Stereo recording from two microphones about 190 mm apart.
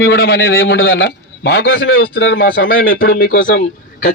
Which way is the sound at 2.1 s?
70° left (ahead or behind).